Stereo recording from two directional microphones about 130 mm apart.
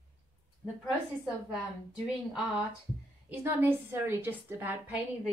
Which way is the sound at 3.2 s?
15° right (ahead or behind).